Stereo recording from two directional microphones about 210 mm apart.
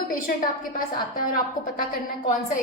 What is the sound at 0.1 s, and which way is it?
A woman's voice, 40° left (ahead or behind).